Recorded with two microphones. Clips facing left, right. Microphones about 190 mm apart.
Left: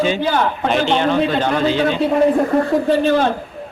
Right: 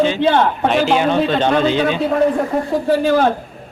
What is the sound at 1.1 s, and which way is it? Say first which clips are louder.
A man's voice: right 1 dB; 20° right (ahead or behind).